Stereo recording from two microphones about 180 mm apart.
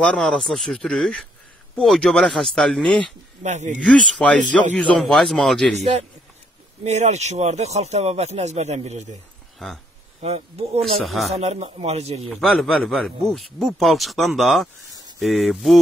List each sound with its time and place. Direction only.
0.0 s speech: 5° left (ahead or behind)
3.4 s speech: 40° right (ahead or behind)
3.8 s speech: 5° left (ahead or behind)
6.8 s speech: 40° right (ahead or behind)
9.6 s speech: centre (ahead or behind)
10.2 s speech: 35° right (ahead or behind)
11.0 s speech: centre (ahead or behind)
11.3 s speech: 35° right (ahead or behind)
12.2 s speech: centre (ahead or behind)